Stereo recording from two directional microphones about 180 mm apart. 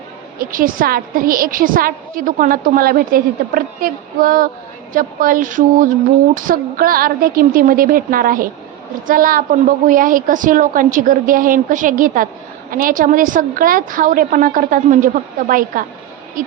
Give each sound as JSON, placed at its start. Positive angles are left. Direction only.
{"t": 0.3, "sound": "a woman's voice", "side_deg": -50}